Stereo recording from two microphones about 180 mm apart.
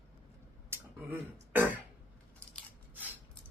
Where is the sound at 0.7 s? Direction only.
15° right (ahead or behind).